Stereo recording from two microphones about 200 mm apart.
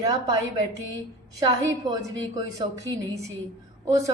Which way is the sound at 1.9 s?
20° right (ahead or behind).